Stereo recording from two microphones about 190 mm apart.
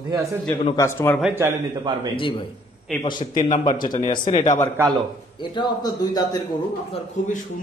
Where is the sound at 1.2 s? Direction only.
10° right (ahead or behind).